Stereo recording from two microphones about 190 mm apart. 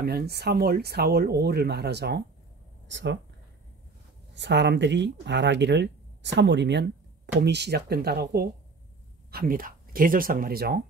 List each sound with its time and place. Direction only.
0.0 s speech: 55° right (ahead or behind)
2.9 s speech: 70° right (ahead or behind)
4.3 s speech: 65° right (ahead or behind)